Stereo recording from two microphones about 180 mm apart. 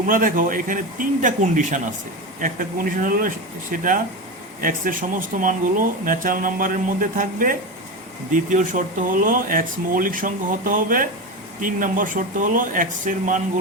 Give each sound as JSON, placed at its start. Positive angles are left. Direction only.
{"t": 0.1, "sound": "speech", "side_deg": -50}